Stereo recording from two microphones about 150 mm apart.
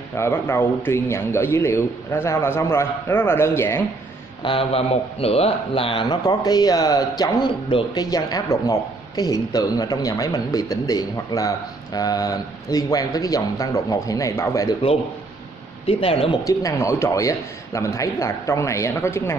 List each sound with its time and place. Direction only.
0.1 s a man's voice: 15° left (ahead or behind)
4.4 s speech: 35° left (ahead or behind); by 14.8 s 20° left (ahead or behind)
15.9 s speech: 40° left (ahead or behind)
16.4 s speech: 20° left (ahead or behind)